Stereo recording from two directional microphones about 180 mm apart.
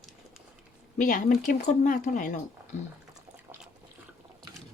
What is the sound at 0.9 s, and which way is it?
Speech, 45° left (ahead or behind).